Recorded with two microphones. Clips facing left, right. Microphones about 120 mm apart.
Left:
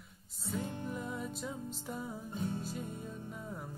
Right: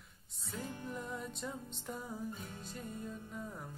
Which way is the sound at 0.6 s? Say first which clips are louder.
Left 3 dB; 25° left (ahead or behind).